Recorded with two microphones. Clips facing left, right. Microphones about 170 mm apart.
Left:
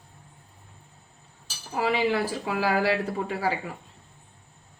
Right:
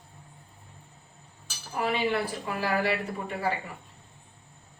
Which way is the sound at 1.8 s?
90° left.